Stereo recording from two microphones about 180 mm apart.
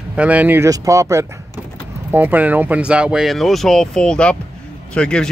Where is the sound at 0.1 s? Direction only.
5° right (ahead or behind).